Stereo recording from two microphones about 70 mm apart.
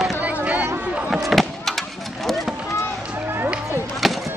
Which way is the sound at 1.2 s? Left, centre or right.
Centre.